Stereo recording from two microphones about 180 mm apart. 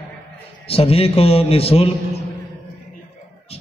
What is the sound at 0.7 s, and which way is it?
A man's voice, 35° left (ahead or behind).